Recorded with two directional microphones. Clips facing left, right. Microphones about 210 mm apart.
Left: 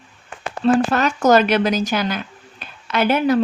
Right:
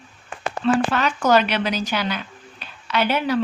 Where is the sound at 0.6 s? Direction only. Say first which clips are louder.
Left 4 dB; 45° left (ahead or behind).